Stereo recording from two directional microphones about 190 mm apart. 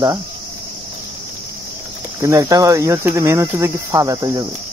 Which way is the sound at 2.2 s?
15° right (ahead or behind).